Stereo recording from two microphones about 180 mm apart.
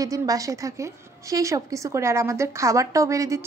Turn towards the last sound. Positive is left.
turn(degrees=-15)  # may be behind; listen again after turning